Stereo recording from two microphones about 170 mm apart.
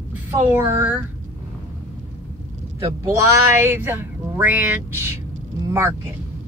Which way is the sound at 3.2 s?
15° right (ahead or behind).